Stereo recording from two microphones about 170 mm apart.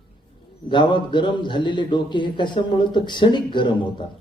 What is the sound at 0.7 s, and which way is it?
A man's voice, 25° left (ahead or behind).